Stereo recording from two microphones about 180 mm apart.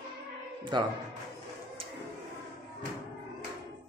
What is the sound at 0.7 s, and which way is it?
Speech, 25° right (ahead or behind).